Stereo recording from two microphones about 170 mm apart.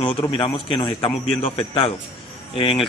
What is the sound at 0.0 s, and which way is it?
A man's voice, 35° left (ahead or behind).